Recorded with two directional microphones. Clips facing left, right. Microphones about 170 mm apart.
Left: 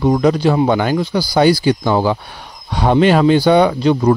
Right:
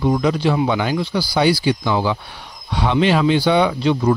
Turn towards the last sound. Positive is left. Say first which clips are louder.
# left 4 dB
turn(degrees=45)  # may be behind; listen again after turning